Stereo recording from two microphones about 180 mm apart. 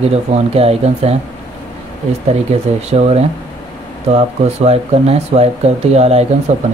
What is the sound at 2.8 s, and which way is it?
Speech, 35° right (ahead or behind).